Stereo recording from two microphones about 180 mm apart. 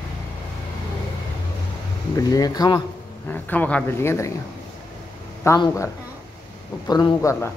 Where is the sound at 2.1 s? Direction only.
20° left (ahead or behind).